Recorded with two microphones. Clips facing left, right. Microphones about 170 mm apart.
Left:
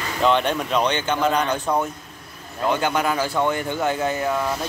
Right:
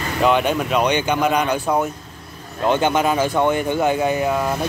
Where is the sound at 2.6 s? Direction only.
20° right (ahead or behind).